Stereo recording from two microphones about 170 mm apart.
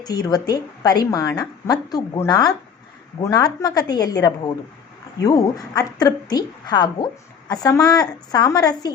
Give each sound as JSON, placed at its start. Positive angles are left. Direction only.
{"t": 0.0, "sound": "a woman's voice", "side_deg": 25}